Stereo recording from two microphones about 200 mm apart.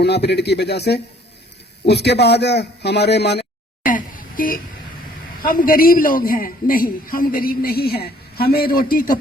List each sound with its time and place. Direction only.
0.0 s a man's voice: 55° left (ahead or behind)
3.8 s a sound: 45° left (ahead or behind)
5.4 s a man's voice: 45° left (ahead or behind)